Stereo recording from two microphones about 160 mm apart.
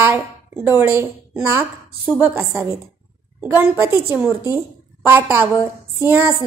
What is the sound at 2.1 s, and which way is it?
A woman's voice, 15° right (ahead or behind).